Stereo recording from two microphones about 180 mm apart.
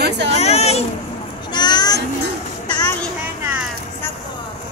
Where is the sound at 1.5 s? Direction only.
25° left (ahead or behind).